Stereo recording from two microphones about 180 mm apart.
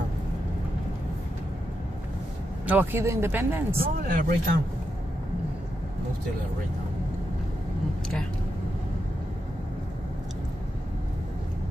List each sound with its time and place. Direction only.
2.6 s speech: 10° right (ahead or behind)
3.7 s speech: 55° right (ahead or behind)